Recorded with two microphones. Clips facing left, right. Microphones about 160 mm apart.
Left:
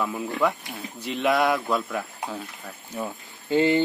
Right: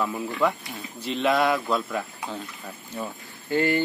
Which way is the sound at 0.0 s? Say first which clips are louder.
Even; centre (ahead or behind).